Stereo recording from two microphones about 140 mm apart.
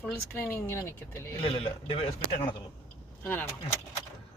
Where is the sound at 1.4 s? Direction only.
40° left (ahead or behind).